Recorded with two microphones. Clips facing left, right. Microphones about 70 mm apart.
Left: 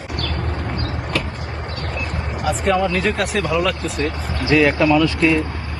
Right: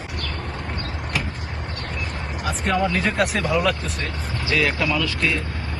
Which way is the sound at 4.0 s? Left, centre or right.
Left.